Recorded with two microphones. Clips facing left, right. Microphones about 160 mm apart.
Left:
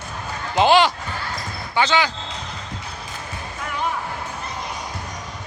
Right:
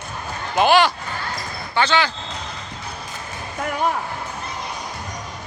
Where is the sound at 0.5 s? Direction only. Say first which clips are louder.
Even; 20° left (ahead or behind).